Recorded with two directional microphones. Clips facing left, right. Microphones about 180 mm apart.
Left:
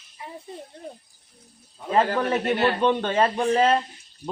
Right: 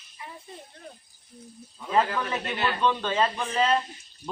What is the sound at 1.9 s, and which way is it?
Speech, 45° left (ahead or behind).